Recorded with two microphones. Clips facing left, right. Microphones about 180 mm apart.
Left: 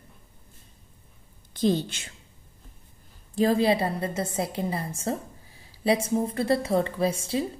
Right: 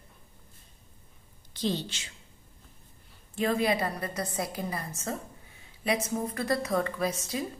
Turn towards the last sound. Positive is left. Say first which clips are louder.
# left 5 dB
turn(degrees=30)  # may be behind; listen again after turning